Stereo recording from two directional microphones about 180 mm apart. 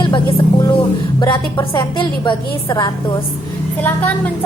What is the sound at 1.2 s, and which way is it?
A woman's voice, 25° left (ahead or behind).